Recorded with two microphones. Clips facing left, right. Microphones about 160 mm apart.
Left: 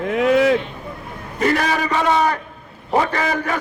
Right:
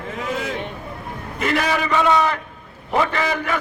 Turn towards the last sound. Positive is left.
turn(degrees=40)  # may be behind; listen again after turning